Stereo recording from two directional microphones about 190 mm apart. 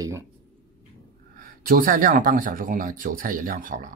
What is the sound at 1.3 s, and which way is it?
Speech, 50° right (ahead or behind).